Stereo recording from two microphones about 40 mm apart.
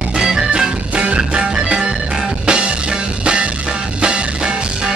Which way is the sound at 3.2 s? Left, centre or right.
Right.